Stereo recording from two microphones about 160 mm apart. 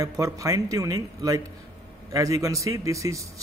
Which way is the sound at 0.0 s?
20° right (ahead or behind).